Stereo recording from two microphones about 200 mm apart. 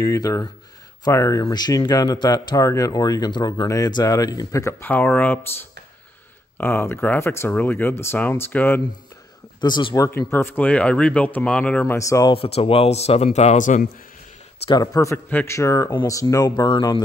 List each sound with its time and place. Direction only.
0.0 s speech: 15° left (ahead or behind)
6.6 s speech: 10° left (ahead or behind)
9.6 s speech: 20° left (ahead or behind)
12.4 s speech: 30° left (ahead or behind)
14.7 s speech: 20° left (ahead or behind)